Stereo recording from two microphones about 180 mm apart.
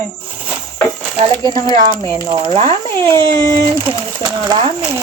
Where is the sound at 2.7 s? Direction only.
25° right (ahead or behind).